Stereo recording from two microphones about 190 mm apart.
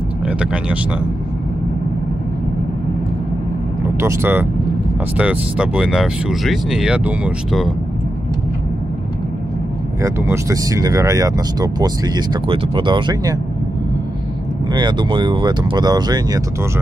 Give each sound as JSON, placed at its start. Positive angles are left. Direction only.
{"t": 0.4, "sound": "speech", "side_deg": -5}
{"t": 4.0, "sound": "speech", "side_deg": -10}
{"t": 10.0, "sound": "speech", "side_deg": -15}
{"t": 14.7, "sound": "speech", "side_deg": -25}